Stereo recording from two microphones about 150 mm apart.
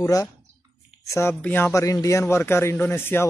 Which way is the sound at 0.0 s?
20° left (ahead or behind).